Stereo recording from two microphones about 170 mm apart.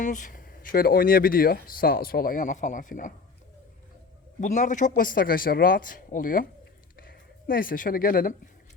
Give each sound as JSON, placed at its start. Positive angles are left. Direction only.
{"t": 0.0, "sound": "speech", "side_deg": 50}
{"t": 4.4, "sound": "speech", "side_deg": 45}